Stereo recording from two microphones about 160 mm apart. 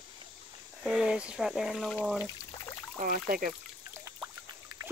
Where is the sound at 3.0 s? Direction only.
60° right (ahead or behind).